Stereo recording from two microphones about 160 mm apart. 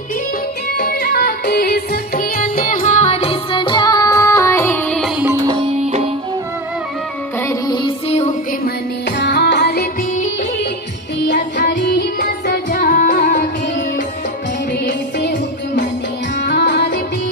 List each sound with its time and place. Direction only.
0.7 s music: 70° left (ahead or behind); by 4.7 s 15° left (ahead or behind)
7.4 s music: 25° left (ahead or behind)
8.1 s music: 45° left (ahead or behind)
9.2 s music: 90° left
11.6 s music: 90° left; by 13.5 s 55° left (ahead or behind)
14.9 s music: 90° left